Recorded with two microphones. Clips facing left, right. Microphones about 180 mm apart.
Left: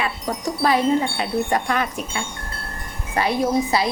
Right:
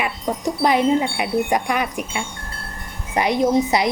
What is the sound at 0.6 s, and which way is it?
Speech, 15° right (ahead or behind).